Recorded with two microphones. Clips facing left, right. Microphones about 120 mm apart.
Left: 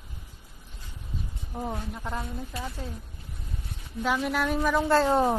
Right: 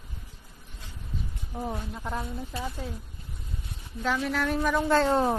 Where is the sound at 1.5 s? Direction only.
10° left (ahead or behind).